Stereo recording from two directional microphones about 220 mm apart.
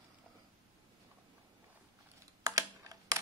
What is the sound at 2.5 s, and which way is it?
Computer keyboard, 15° right (ahead or behind).